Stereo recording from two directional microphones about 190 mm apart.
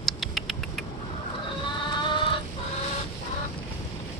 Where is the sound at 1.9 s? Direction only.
25° left (ahead or behind).